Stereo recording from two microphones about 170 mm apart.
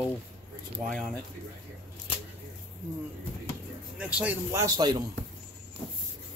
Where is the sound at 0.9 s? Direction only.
5° left (ahead or behind).